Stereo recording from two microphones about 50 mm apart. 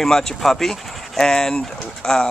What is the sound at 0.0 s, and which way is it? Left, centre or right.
Speech, centre.